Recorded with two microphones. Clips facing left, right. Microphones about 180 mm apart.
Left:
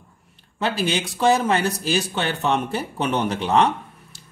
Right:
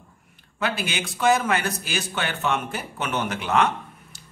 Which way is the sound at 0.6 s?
30° left (ahead or behind).